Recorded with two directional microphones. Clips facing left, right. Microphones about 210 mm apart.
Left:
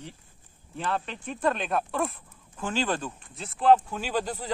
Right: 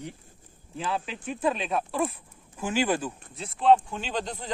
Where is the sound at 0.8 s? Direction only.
5° right (ahead or behind).